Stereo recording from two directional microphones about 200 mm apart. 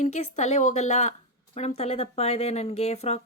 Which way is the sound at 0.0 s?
35° left (ahead or behind).